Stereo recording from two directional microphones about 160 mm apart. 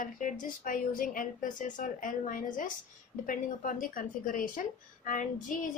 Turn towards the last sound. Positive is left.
turn(degrees=55)  # may be behind; listen again after turning